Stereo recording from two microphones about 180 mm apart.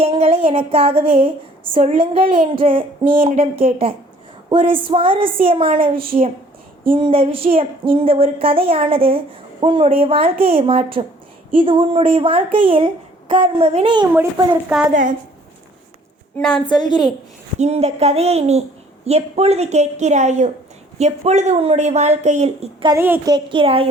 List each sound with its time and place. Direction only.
0.0 s speech: 35° right (ahead or behind)
4.4 s speech: 30° right (ahead or behind)
6.0 s speech: 55° right (ahead or behind)
6.8 s speech: 30° right (ahead or behind)
16.4 s a woman's voice: 5° left (ahead or behind)
16.6 s a woman's voice: 25° left (ahead or behind)
17.6 s speech: 35° right (ahead or behind)
22.9 s a woman's voice: 10° right (ahead or behind)
23.3 s speech: 30° right (ahead or behind)